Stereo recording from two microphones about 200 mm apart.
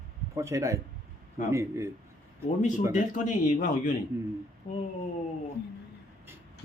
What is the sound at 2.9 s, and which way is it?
Speech, 40° left (ahead or behind).